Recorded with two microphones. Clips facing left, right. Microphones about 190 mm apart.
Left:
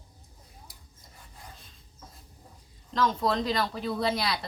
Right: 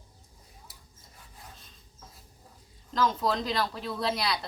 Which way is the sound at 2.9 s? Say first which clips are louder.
Left 1 dB; centre (ahead or behind).